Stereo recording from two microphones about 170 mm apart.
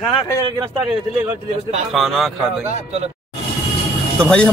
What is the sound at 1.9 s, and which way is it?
Speech, centre (ahead or behind).